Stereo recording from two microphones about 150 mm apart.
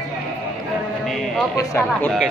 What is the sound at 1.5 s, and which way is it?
Speech, 20° left (ahead or behind).